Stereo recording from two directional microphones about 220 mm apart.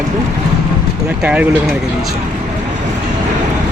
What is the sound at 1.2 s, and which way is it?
Speech, 5° right (ahead or behind).